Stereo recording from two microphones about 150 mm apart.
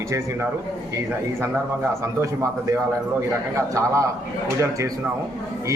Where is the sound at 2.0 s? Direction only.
20° right (ahead or behind).